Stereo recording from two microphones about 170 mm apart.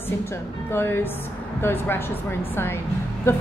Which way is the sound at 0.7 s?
15° left (ahead or behind).